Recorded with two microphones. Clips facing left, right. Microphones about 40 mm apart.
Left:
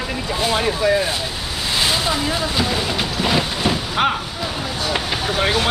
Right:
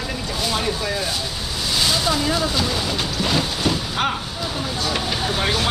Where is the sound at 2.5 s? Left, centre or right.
Left.